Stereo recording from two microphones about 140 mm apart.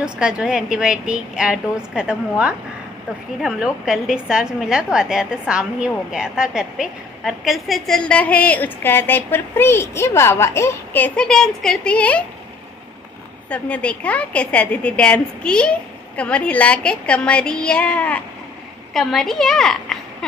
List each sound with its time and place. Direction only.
0.0 s a woman's voice: 5° right (ahead or behind)
13.5 s a woman's voice: 10° left (ahead or behind)